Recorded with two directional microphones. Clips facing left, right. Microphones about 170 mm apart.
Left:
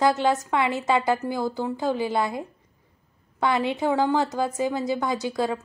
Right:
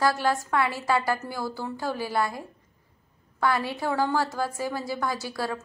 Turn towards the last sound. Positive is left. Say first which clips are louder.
# left 5 dB
turn(degrees=20)  # may be behind; listen again after turning